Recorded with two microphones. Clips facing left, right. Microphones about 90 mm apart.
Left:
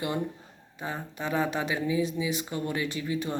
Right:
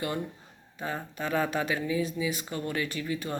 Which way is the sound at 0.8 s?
15° left (ahead or behind).